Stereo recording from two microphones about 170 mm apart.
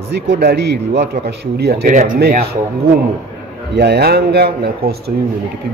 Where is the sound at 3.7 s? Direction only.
75° right (ahead or behind).